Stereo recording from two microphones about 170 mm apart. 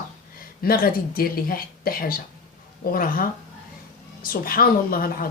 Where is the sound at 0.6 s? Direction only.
60° left (ahead or behind).